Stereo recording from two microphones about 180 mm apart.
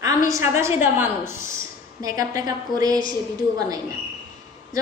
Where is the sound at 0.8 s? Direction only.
10° right (ahead or behind).